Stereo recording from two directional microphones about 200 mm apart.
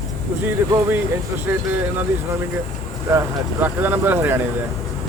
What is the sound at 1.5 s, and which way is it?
Speech, 10° right (ahead or behind).